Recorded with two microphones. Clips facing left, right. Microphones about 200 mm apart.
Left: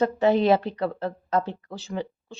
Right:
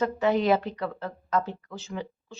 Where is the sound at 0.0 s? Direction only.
30° left (ahead or behind).